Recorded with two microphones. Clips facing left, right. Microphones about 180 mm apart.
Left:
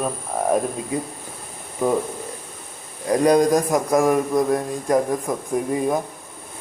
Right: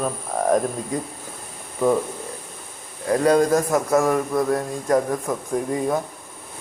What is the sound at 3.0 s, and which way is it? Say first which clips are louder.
Mantra: left 1 dB; 15° left (ahead or behind).